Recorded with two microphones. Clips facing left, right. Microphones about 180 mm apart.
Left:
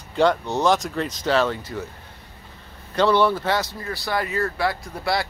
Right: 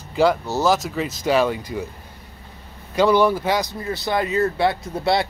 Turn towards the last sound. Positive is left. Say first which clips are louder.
# right 4 dB
turn(degrees=-25)  # may be behind; listen again after turning